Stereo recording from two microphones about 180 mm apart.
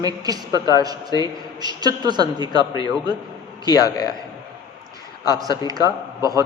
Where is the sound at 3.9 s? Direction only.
20° left (ahead or behind).